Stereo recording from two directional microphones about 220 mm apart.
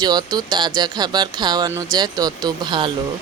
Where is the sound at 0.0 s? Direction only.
15° right (ahead or behind).